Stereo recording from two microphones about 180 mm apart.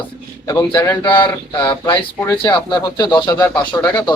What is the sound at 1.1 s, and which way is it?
Speech, 25° left (ahead or behind).